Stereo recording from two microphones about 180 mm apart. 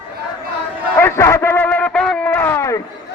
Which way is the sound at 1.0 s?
15° left (ahead or behind).